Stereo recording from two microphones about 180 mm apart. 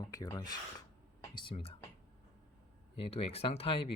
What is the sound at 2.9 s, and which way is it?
Speech, 30° left (ahead or behind).